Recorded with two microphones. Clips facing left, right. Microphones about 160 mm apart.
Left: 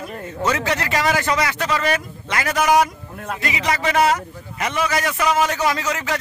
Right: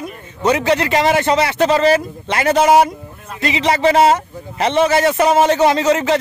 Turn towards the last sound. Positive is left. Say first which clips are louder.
# right 8 dB
turn(degrees=-25)  # may be behind; listen again after turning